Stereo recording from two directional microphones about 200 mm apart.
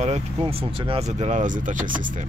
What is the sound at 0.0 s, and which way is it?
Speech, 30° right (ahead or behind).